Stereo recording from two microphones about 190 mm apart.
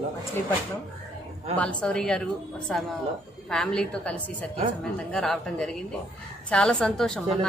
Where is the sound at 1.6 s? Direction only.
5° left (ahead or behind).